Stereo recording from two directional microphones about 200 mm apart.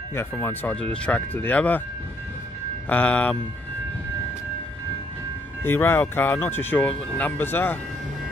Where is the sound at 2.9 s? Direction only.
5° left (ahead or behind).